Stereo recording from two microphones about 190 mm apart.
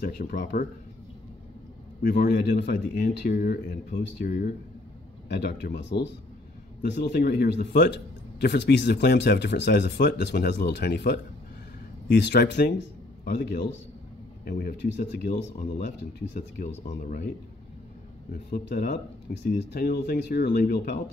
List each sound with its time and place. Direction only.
0.0 s speech: 50° left (ahead or behind)
2.0 s speech: 60° left (ahead or behind)
16.0 s speech: 60° left (ahead or behind)
18.3 s speech: 55° left (ahead or behind)